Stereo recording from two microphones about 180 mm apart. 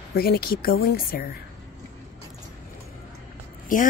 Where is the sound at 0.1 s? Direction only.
55° left (ahead or behind).